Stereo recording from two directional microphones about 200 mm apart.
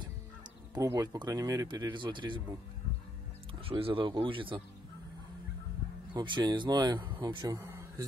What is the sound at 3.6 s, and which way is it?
Speech, 30° right (ahead or behind).